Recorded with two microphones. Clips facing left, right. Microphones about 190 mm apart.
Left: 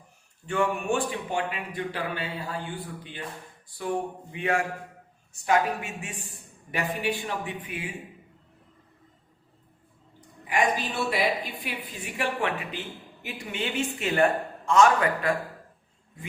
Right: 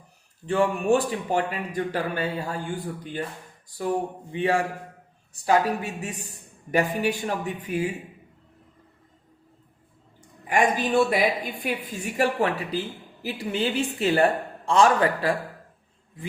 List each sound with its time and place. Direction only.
0.4 s a man's voice: 35° right (ahead or behind)
10.2 s a man's voice: 50° right (ahead or behind); by 15.4 s 30° right (ahead or behind)